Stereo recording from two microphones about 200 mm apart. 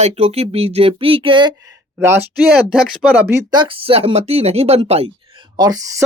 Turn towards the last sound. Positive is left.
turn(degrees=-15)  # may be behind; listen again after turning